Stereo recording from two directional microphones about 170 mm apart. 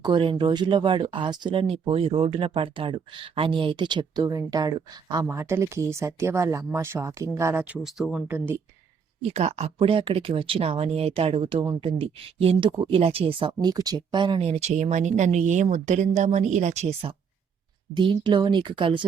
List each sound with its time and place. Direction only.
0.0 s speech: 30° right (ahead or behind); by 8.5 s 10° right (ahead or behind)
9.3 s speech: 40° right (ahead or behind)